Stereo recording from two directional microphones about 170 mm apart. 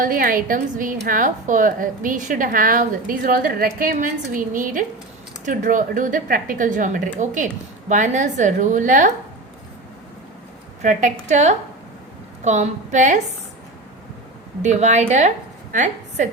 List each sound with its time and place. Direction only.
0.0 s a woman's voice: 55° right (ahead or behind)
10.8 s a woman's voice: 45° right (ahead or behind)
14.6 s a woman's voice: 45° right (ahead or behind)